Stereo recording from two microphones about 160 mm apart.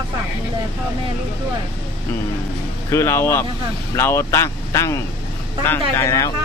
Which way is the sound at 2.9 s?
15° left (ahead or behind).